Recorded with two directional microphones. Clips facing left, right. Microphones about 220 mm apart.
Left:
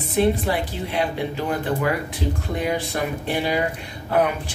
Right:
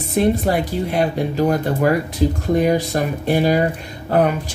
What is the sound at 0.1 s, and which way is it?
Speech, 45° right (ahead or behind).